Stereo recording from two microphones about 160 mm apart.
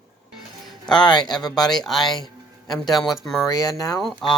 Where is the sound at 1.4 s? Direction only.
Centre (ahead or behind).